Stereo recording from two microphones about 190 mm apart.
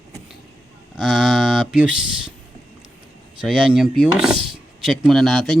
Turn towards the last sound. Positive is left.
turn(degrees=0)  # may be behind; listen again after turning